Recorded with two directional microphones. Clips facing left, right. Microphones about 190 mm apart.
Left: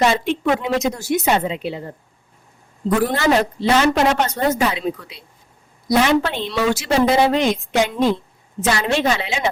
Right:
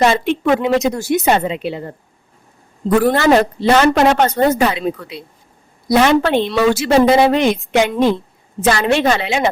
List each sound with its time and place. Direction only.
0.0 s a woman's voice: 65° right (ahead or behind)
3.1 s a woman's voice: 60° right (ahead or behind)